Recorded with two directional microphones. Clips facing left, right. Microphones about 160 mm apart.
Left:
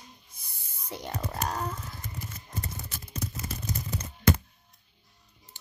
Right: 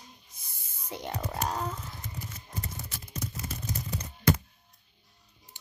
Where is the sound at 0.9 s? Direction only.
20° right (ahead or behind).